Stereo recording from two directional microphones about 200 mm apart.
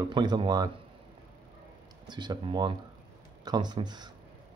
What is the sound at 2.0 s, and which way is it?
Speech, 20° right (ahead or behind).